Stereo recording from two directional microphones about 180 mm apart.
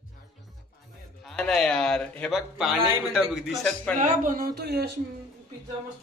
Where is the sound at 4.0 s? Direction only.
50° right (ahead or behind); by 4.9 s 65° right (ahead or behind).